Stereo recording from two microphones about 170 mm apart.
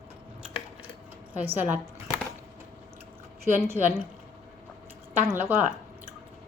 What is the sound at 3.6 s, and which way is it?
Speech, 15° right (ahead or behind).